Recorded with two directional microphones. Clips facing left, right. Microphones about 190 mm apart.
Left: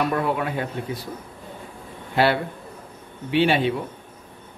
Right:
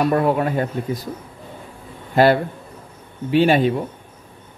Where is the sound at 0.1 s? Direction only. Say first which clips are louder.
Right 6 dB; 45° right (ahead or behind).